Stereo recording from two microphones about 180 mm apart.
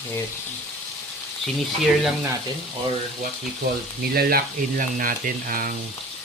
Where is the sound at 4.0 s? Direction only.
55° right (ahead or behind).